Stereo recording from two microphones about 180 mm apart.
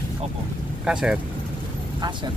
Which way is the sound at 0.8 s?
5° right (ahead or behind).